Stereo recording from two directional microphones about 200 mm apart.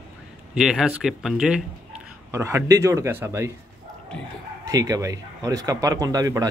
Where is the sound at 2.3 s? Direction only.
15° right (ahead or behind).